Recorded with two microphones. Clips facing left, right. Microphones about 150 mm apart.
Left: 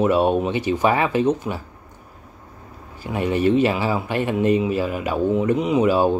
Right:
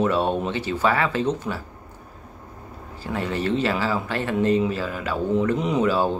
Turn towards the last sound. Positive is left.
turn(degrees=15)  # may be behind; listen again after turning